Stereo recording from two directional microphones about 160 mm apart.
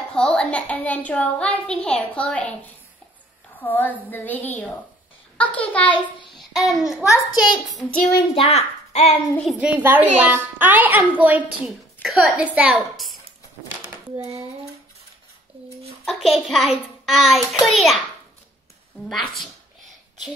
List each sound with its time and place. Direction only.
0.1 s a child's voice: 5° left (ahead or behind)
6.3 s child singing: centre (ahead or behind)
7.3 s a child's voice: centre (ahead or behind)
8.1 s a child's voice: 25° left (ahead or behind)
8.5 s a child's voice: 40° left (ahead or behind)
9.4 s a child's voice: centre (ahead or behind)
9.8 s a child's voice: 10° right (ahead or behind)
14.1 s a sound: 20° right (ahead or behind)
15.5 s a sound: 35° right (ahead or behind)
16.1 s a child's voice: centre (ahead or behind)
19.0 s a sound: centre (ahead or behind)